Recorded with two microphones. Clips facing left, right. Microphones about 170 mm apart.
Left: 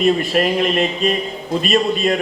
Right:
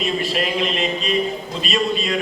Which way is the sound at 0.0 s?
50° left (ahead or behind).